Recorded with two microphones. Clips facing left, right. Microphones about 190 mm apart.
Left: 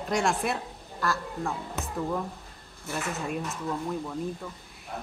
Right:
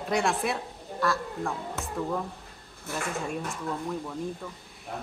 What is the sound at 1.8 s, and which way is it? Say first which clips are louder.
Speech: left 1 dB; 20° left (ahead or behind).